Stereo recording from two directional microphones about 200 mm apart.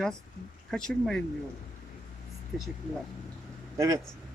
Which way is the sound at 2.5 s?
Centre (ahead or behind).